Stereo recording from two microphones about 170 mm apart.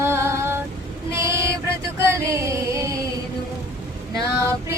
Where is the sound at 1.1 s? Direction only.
15° right (ahead or behind).